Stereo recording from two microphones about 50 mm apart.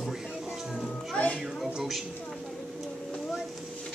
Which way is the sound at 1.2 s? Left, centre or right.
Left.